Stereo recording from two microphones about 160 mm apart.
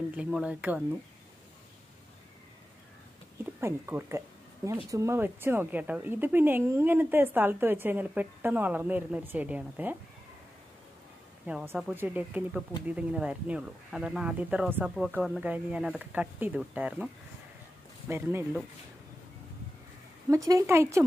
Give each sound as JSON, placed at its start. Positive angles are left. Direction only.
{"t": 0.1, "sound": "a woman's voice", "side_deg": -5}
{"t": 3.6, "sound": "a woman's voice", "side_deg": -15}
{"t": 11.4, "sound": "a woman's voice", "side_deg": -10}
{"t": 20.2, "sound": "speech", "side_deg": -20}